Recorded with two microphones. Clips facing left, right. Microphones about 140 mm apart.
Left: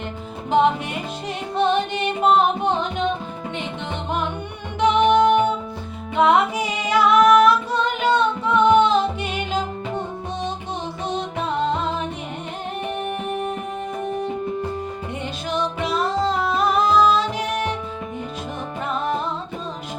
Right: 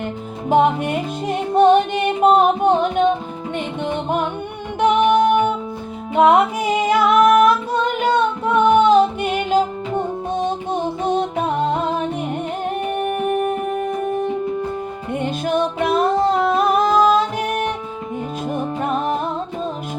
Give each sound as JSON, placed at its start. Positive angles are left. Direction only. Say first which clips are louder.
{"t": 0.5, "sound": "music", "louder": "right 3 dB", "side_deg": -50}
{"t": 4.8, "sound": "music", "louder": "right 1 dB", "side_deg": -50}
{"t": 12.9, "sound": "music", "louder": "right 6 dB", "side_deg": -50}
{"t": 15.1, "sound": "music", "louder": "right 9 dB", "side_deg": -50}